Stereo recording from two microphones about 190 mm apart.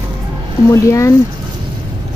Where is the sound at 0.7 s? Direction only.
15° left (ahead or behind).